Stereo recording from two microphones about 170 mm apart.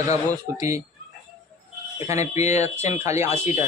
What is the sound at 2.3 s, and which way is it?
Speech, 40° left (ahead or behind).